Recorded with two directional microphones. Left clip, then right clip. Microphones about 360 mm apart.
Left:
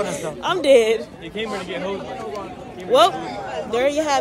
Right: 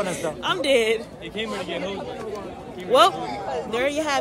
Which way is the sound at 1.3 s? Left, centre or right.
Centre.